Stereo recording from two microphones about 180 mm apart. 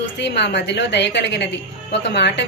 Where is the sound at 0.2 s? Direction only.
75° left (ahead or behind).